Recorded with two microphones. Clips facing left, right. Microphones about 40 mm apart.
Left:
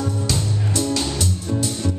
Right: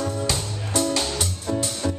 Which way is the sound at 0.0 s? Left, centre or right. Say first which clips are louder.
Left 2 dB; centre.